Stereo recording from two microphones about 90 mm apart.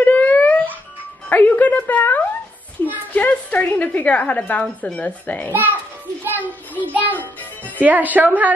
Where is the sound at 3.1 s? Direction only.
20° left (ahead or behind).